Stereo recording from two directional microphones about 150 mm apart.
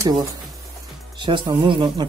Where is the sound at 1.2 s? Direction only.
30° right (ahead or behind).